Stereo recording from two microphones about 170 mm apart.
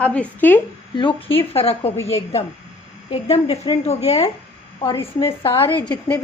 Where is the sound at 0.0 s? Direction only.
10° left (ahead or behind).